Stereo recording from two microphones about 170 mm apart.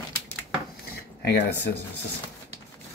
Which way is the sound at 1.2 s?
75° left (ahead or behind).